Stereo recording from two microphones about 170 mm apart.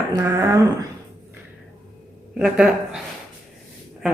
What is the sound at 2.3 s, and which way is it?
Speech, 5° right (ahead or behind).